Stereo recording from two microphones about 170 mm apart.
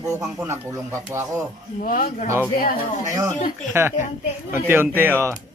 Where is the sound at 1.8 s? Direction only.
55° left (ahead or behind).